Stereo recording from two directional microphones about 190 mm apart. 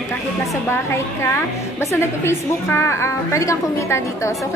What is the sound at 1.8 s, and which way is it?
A woman's voice, 15° left (ahead or behind).